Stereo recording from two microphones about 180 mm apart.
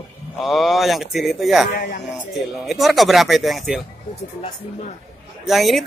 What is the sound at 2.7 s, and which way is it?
Speech, centre (ahead or behind).